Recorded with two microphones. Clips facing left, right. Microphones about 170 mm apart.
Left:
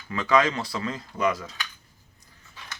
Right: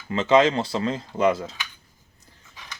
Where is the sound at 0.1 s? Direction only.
25° right (ahead or behind).